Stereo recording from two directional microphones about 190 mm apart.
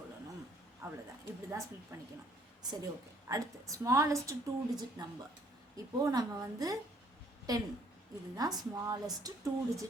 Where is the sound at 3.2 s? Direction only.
15° right (ahead or behind).